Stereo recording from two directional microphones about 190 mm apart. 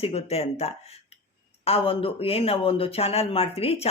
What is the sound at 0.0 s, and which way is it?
Speech, 30° left (ahead or behind).